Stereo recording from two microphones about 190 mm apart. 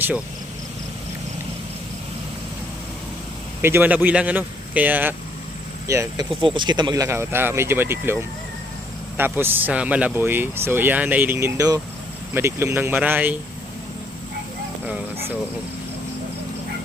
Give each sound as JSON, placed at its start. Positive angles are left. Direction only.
{"t": 3.6, "sound": "speech", "side_deg": -10}